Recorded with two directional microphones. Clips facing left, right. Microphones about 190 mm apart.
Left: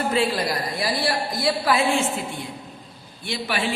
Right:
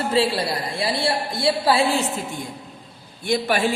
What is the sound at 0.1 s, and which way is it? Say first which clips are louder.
A woman's voice: right 2 dB; 30° right (ahead or behind).